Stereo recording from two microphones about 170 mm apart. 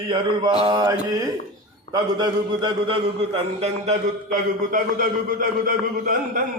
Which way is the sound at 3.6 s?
45° right (ahead or behind).